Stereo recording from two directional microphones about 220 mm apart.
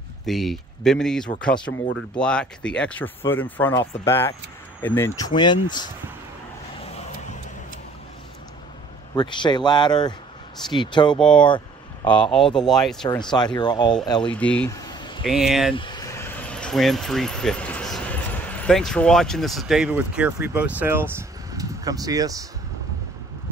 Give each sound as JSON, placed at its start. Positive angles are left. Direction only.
{"t": 0.2, "sound": "speech", "side_deg": 0}
{"t": 1.7, "sound": "speech", "side_deg": 55}
{"t": 2.1, "sound": "speech", "side_deg": 5}
{"t": 6.8, "sound": "vehicle", "side_deg": 30}
{"t": 9.1, "sound": "speech", "side_deg": 20}
{"t": 11.1, "sound": "speech", "side_deg": 5}
{"t": 11.4, "sound": "a sound", "side_deg": 20}
{"t": 12.5, "sound": "speech", "side_deg": 0}
{"t": 13.2, "sound": "speech", "side_deg": 20}
{"t": 14.3, "sound": "speech", "side_deg": 5}
{"t": 14.8, "sound": "a sound", "side_deg": 20}
{"t": 15.2, "sound": "speech", "side_deg": 0}
{"t": 15.7, "sound": "speech", "side_deg": 20}